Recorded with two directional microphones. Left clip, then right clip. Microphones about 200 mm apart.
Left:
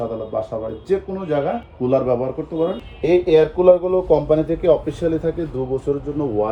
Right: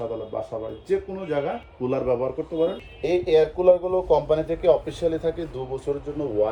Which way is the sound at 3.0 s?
Centre (ahead or behind).